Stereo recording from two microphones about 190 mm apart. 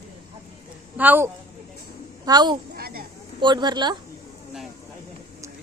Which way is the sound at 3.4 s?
25° right (ahead or behind).